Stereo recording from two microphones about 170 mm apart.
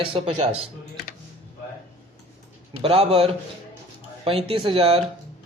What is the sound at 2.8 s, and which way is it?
A man's voice, 35° right (ahead or behind).